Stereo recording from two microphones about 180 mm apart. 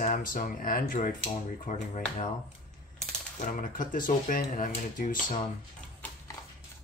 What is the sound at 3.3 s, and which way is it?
Speech, 45° left (ahead or behind).